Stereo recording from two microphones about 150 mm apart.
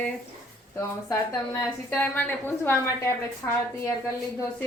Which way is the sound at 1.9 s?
10° left (ahead or behind).